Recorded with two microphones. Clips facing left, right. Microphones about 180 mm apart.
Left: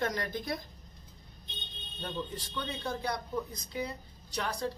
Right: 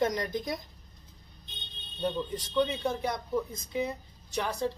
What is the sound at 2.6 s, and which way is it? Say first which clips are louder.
Speech: right 8 dB; 20° right (ahead or behind).